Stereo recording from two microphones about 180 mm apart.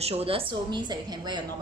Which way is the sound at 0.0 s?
35° right (ahead or behind).